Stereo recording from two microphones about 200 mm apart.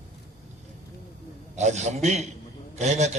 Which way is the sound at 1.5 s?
35° right (ahead or behind).